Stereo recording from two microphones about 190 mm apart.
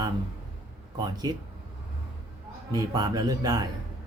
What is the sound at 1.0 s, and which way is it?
Speech, 20° right (ahead or behind).